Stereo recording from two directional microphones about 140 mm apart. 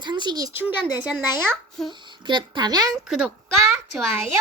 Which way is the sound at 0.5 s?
15° right (ahead or behind).